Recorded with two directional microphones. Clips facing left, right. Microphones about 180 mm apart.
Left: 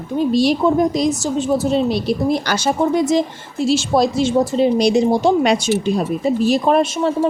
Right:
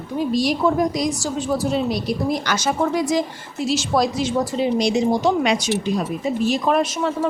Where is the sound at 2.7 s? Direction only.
25° left (ahead or behind).